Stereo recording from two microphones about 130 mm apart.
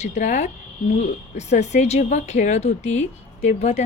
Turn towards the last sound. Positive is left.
turn(degrees=60)  # may be behind; listen again after turning